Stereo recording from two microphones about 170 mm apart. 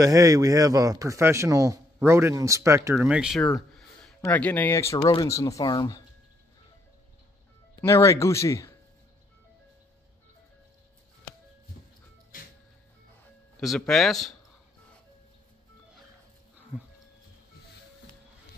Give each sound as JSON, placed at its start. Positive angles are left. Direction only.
{"t": 0.0, "sound": "a man's voice", "side_deg": -20}
{"t": 7.8, "sound": "speech", "side_deg": 15}
{"t": 13.6, "sound": "speech", "side_deg": 0}
{"t": 16.7, "sound": "speech", "side_deg": -10}